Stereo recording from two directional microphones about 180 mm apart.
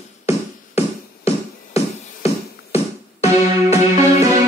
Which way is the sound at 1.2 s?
35° left (ahead or behind).